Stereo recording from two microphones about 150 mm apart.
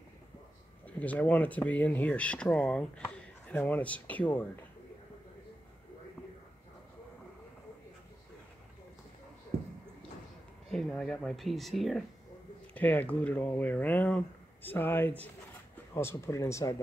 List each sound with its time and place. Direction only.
0.8 s speech: 10° left (ahead or behind)
10.7 s speech: 5° left (ahead or behind); by 16.7 s 20° left (ahead or behind)